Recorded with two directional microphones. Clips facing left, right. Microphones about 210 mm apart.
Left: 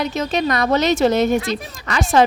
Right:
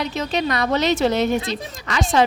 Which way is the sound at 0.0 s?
45° left (ahead or behind).